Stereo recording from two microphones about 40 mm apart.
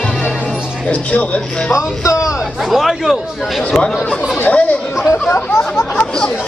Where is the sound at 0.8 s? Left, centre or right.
Left.